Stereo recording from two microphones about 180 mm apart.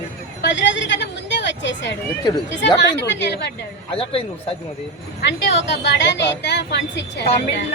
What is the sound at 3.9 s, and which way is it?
Speech, 30° left (ahead or behind).